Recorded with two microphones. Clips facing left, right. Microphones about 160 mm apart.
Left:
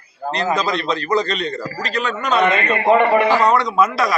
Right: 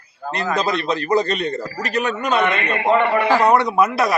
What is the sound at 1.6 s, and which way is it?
Speech, 10° right (ahead or behind).